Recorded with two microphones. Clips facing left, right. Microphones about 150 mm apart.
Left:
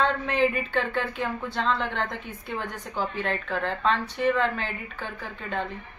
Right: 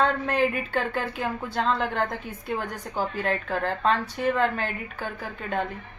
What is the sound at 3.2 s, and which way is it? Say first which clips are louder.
Speech: right 2 dB; 40° right (ahead or behind).